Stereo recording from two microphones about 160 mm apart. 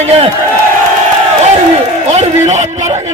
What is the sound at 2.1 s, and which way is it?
Speech, 45° right (ahead or behind).